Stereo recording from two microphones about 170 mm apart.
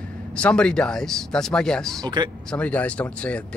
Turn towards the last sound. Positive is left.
turn(degrees=5)  # may be behind; listen again after turning